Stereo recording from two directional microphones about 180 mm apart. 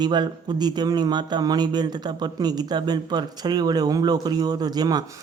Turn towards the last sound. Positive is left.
turn(degrees=-20)  # may be behind; listen again after turning